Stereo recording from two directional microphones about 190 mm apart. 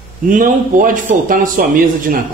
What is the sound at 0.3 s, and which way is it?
A man's voice, 45° right (ahead or behind).